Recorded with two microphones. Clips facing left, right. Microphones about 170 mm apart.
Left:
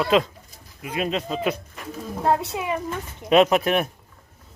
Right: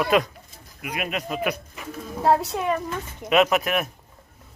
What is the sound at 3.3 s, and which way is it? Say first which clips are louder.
Speech: left 3 dB; 30° left (ahead or behind).